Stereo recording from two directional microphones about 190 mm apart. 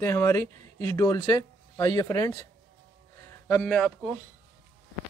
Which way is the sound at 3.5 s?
5° left (ahead or behind).